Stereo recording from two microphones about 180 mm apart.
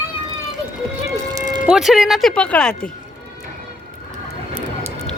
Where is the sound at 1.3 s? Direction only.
20° right (ahead or behind).